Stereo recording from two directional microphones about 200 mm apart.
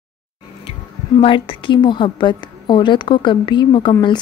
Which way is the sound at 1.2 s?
25° left (ahead or behind).